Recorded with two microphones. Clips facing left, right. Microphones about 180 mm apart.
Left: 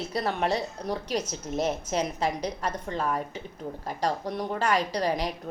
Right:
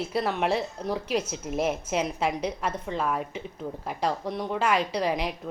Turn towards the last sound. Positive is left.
turn(degrees=0)  # may be behind; listen again after turning